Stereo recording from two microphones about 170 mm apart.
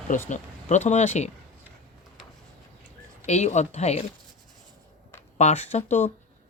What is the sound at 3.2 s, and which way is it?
Speech, 40° left (ahead or behind).